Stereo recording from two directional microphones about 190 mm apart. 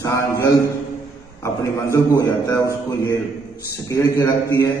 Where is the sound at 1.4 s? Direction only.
15° left (ahead or behind).